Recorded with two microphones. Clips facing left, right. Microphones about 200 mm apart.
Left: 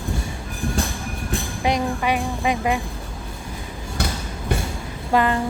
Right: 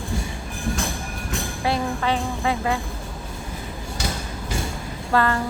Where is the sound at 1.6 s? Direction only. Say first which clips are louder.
Left 2 dB; 15° left (ahead or behind).